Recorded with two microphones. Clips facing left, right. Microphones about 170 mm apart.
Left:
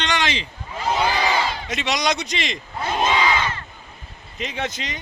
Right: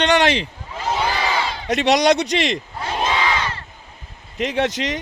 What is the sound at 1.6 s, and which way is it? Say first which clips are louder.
Speech: right 8 dB; 65° right (ahead or behind).